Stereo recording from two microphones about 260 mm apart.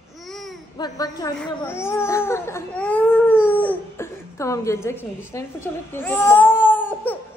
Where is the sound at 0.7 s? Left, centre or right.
Centre.